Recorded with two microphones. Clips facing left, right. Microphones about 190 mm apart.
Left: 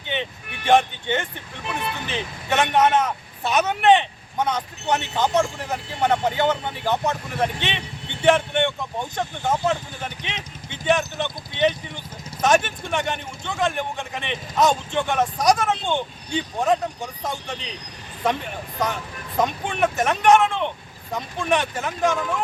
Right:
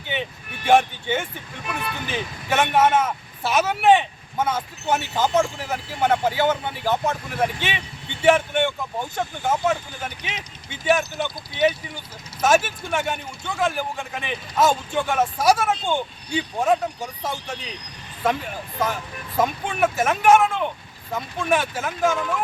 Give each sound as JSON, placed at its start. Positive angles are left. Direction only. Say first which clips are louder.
{"t": 0.1, "sound": "a man's voice", "louder": "even", "side_deg": -5}
{"t": 19.4, "sound": "a man's voice", "louder": "even", "side_deg": -5}